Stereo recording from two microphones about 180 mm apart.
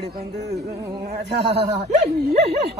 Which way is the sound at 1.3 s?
70° right (ahead or behind).